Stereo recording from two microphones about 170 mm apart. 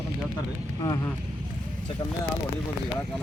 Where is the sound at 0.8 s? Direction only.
25° left (ahead or behind).